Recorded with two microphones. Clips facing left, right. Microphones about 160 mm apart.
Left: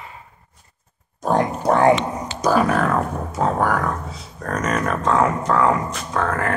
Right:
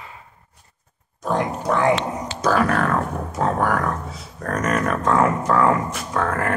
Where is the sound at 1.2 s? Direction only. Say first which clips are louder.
Left 3 dB; 40° left (ahead or behind).